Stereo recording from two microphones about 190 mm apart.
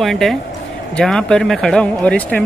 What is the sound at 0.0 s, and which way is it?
Speech, centre (ahead or behind).